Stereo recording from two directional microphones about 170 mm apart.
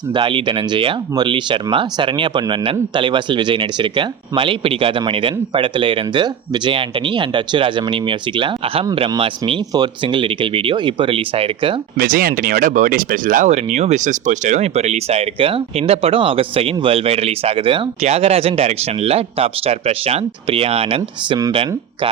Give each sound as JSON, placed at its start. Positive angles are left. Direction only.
{"t": 0.1, "sound": "speech", "side_deg": -30}
{"t": 11.9, "sound": "speech", "side_deg": -60}